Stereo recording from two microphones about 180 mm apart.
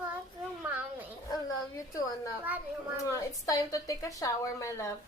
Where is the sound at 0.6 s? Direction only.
10° right (ahead or behind).